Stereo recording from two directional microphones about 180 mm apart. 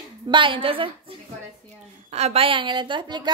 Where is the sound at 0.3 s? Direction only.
30° right (ahead or behind).